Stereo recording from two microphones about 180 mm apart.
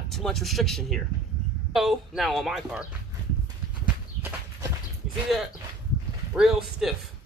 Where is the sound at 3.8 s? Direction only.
10° right (ahead or behind).